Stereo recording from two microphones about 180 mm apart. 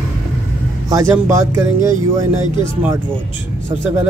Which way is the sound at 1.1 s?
10° right (ahead or behind).